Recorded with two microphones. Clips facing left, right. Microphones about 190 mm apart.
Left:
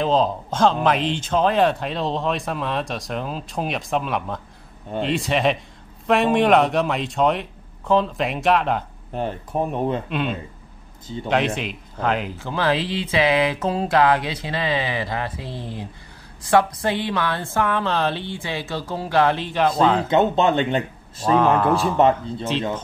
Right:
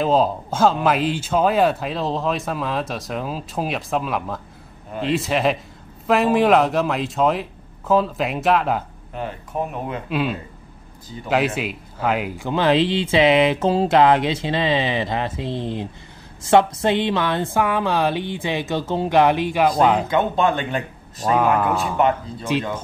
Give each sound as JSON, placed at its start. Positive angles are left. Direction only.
{"t": 0.0, "sound": "speech", "side_deg": -10}
{"t": 9.1, "sound": "speech", "side_deg": 35}
{"t": 10.0, "sound": "speech", "side_deg": -5}
{"t": 20.1, "sound": "speech", "side_deg": 25}
{"t": 21.3, "sound": "speech", "side_deg": -10}